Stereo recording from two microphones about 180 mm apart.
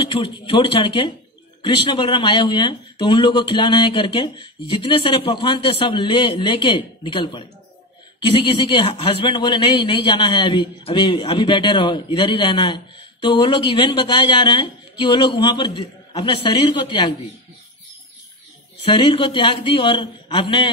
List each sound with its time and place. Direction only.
0.0 s speech: 25° left (ahead or behind)
18.9 s speech: 25° left (ahead or behind)